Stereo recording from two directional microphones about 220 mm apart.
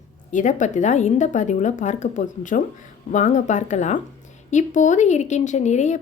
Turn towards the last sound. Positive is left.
turn(degrees=30)  # may be behind; listen again after turning